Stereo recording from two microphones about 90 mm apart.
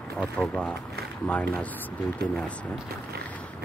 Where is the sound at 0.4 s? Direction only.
20° left (ahead or behind).